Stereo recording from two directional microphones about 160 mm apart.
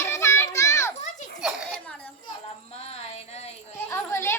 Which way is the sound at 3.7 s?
15° left (ahead or behind).